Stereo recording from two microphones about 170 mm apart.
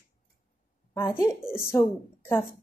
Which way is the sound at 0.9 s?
15° left (ahead or behind).